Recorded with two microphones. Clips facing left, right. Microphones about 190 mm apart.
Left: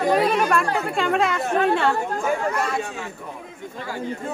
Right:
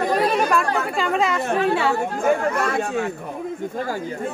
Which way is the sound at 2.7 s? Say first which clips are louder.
Right 5 dB; 55° right (ahead or behind).